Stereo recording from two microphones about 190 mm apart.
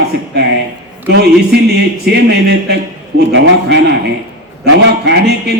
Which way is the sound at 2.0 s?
60° right (ahead or behind).